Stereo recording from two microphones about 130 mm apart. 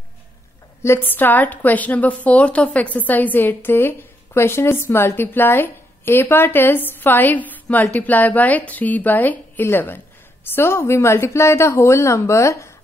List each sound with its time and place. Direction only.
0.8 s a woman's voice: 15° left (ahead or behind)